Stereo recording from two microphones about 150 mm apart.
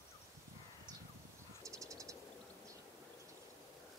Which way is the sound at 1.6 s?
20° right (ahead or behind).